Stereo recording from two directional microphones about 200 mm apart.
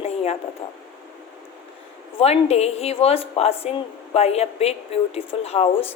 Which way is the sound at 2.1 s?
30° left (ahead or behind).